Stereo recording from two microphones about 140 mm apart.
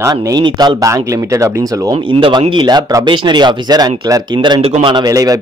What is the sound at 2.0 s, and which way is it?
Speech, 35° right (ahead or behind).